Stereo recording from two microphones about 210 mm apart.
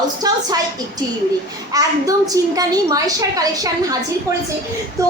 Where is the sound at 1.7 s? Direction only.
15° right (ahead or behind).